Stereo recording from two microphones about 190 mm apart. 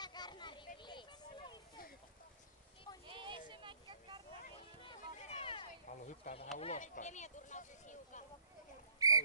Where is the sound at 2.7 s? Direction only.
25° left (ahead or behind).